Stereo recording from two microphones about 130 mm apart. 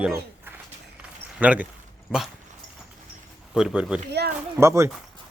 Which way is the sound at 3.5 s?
5° right (ahead or behind).